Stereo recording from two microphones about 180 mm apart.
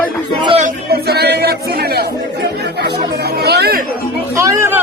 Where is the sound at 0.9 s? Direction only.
60° right (ahead or behind).